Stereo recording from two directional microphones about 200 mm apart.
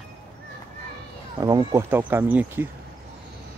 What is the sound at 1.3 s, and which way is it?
Speech, 15° right (ahead or behind).